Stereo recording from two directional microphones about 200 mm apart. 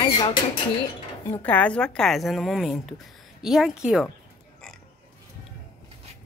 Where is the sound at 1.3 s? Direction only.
10° left (ahead or behind).